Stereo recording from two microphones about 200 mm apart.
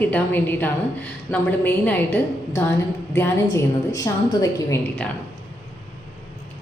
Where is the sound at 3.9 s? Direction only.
15° left (ahead or behind).